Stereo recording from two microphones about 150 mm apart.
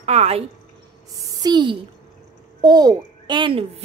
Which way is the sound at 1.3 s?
25° right (ahead or behind).